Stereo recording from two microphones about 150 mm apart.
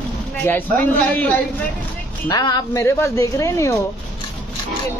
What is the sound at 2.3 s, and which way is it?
Speech, 30° left (ahead or behind).